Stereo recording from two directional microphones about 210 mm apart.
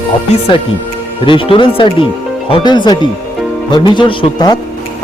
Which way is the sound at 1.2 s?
25° left (ahead or behind).